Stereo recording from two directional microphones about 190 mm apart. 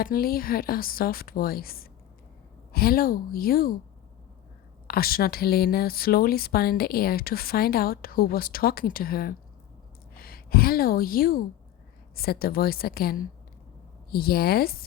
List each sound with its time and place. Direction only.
0.0 s speech: 50° left (ahead or behind)
4.9 s a woman's voice: 50° left (ahead or behind)